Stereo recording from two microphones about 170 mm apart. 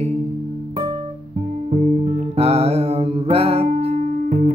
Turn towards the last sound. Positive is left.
turn(degrees=-50)  # may be behind; listen again after turning